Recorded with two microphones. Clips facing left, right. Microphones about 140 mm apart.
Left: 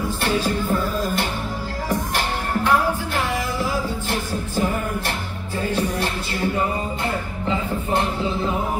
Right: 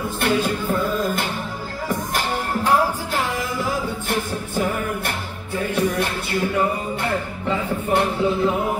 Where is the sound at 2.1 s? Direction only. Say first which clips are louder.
Even; 40° right (ahead or behind).